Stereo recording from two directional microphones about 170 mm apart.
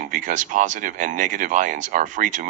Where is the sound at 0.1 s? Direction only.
50° right (ahead or behind).